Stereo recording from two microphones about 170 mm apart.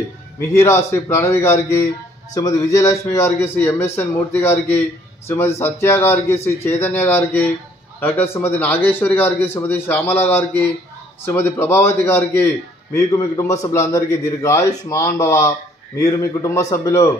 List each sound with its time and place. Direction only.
0.4 s a man's voice: 20° left (ahead or behind)